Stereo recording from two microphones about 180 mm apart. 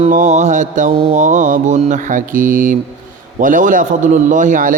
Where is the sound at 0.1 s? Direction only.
45° right (ahead or behind).